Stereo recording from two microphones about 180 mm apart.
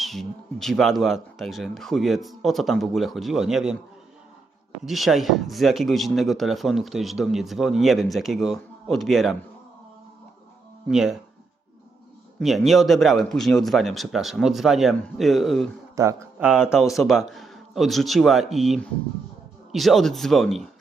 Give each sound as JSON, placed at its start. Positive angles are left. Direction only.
{"t": 0.0, "sound": "speech", "side_deg": 0}
{"t": 4.9, "sound": "speech", "side_deg": 0}
{"t": 10.8, "sound": "speech", "side_deg": 0}
{"t": 12.4, "sound": "speech", "side_deg": 0}
{"t": 16.0, "sound": "speech", "side_deg": -20}
{"t": 16.4, "sound": "speech", "side_deg": -5}